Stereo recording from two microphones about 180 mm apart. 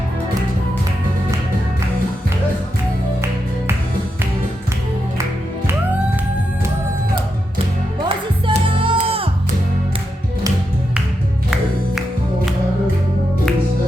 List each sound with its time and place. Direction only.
8.4 s music: 30° right (ahead or behind)